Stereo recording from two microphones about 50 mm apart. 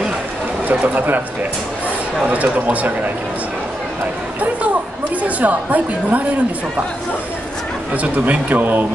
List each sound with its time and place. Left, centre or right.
0.7 s a woman's voice: right
2.2 s speech: right
5.2 s a woman's voice: right
7.9 s a woman's voice: right